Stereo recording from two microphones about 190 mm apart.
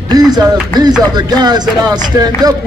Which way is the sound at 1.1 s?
20° right (ahead or behind).